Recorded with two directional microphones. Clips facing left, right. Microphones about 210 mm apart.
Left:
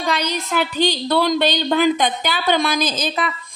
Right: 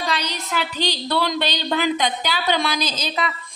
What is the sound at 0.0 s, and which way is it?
Speech, 50° left (ahead or behind).